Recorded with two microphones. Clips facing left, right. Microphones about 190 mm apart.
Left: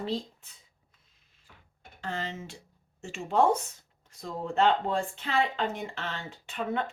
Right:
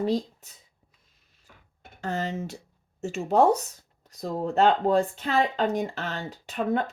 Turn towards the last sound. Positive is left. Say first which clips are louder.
# right 5 dB
turn(degrees=-40)  # may be behind; listen again after turning